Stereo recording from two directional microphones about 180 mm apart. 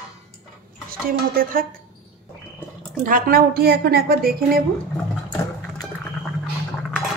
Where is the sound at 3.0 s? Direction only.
55° right (ahead or behind).